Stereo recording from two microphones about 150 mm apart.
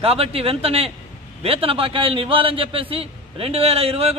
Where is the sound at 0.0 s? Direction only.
40° right (ahead or behind).